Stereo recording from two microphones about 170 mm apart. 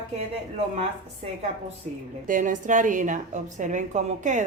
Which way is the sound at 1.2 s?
45° right (ahead or behind).